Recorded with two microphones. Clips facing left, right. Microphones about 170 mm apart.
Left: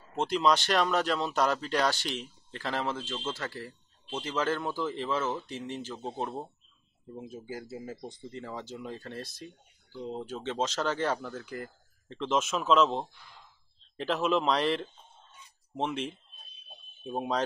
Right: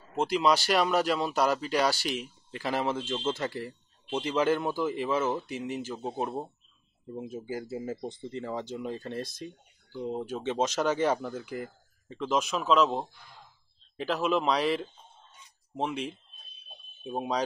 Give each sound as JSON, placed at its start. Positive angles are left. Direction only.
{"t": 0.1, "sound": "speech", "side_deg": -5}
{"t": 7.2, "sound": "speech", "side_deg": -25}